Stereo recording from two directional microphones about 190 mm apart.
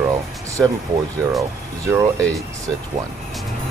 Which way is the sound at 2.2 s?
5° left (ahead or behind).